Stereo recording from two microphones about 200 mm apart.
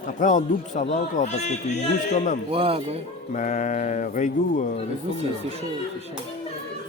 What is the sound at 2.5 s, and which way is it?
Speech, 30° right (ahead or behind).